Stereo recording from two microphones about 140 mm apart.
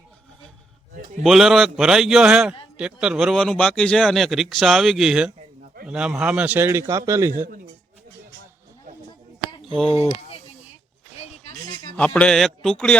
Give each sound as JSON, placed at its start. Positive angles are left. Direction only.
{"t": 1.2, "sound": "a man's voice", "side_deg": 0}
{"t": 9.5, "sound": "a sound", "side_deg": 35}
{"t": 11.9, "sound": "speech", "side_deg": 10}